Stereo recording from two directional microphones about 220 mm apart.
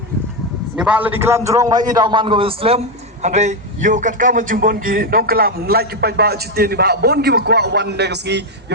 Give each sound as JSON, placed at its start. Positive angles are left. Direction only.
{"t": 0.8, "sound": "a man's voice", "side_deg": -5}